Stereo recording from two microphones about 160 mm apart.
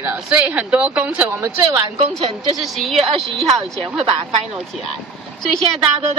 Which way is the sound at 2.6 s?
Centre (ahead or behind).